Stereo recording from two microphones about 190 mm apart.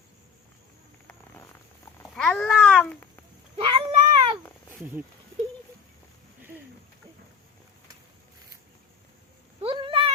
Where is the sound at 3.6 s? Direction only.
30° right (ahead or behind).